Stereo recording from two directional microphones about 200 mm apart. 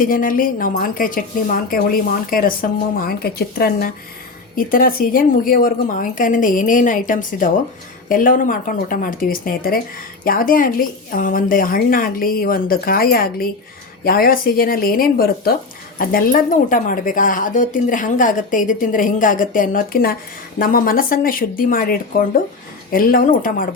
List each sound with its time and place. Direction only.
0.0 s speech: 45° left (ahead or behind)